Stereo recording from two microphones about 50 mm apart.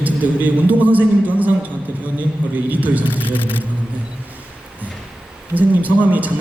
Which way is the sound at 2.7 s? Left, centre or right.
Right.